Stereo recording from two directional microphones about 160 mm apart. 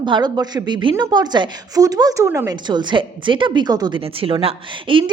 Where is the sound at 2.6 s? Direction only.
30° right (ahead or behind).